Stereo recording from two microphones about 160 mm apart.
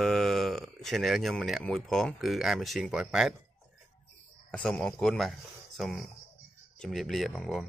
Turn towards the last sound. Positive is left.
turn(degrees=0)  # may be behind; listen again after turning